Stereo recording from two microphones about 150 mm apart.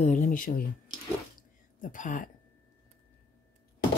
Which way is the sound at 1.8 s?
60° left (ahead or behind).